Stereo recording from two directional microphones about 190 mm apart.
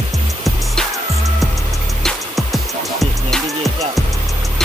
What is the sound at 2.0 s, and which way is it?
Music, centre (ahead or behind).